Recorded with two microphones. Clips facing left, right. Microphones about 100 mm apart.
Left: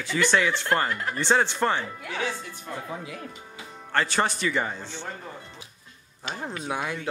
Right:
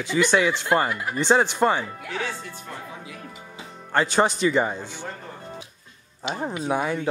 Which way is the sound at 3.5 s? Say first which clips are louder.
Right 3 dB; 15° right (ahead or behind).